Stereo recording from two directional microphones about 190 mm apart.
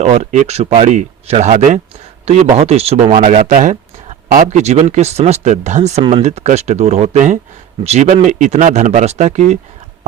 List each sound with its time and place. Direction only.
0.0 s speech: 35° right (ahead or behind)